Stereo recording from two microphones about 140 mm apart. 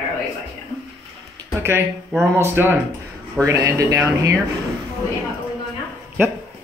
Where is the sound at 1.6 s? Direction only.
20° right (ahead or behind).